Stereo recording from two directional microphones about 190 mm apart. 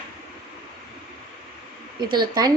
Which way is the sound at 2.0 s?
20° right (ahead or behind).